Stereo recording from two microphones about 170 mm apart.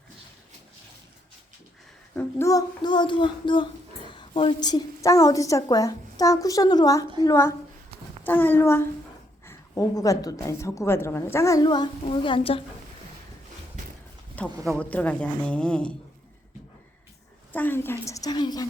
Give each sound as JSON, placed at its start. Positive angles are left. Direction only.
{"t": 2.1, "sound": "a woman's voice", "side_deg": 20}
{"t": 14.3, "sound": "a woman's voice", "side_deg": 10}
{"t": 17.5, "sound": "a woman's voice", "side_deg": 10}